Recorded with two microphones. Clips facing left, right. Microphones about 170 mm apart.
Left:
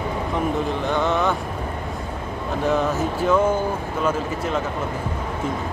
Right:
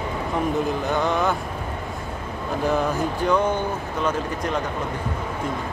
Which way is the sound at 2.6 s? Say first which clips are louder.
Left 1 dB; centre (ahead or behind).